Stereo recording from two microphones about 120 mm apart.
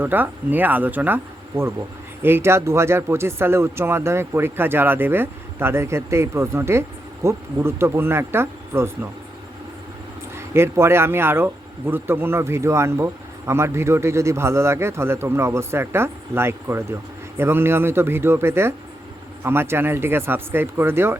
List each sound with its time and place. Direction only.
0.0 s speech: 15° right (ahead or behind)
10.3 s speech: 20° right (ahead or behind)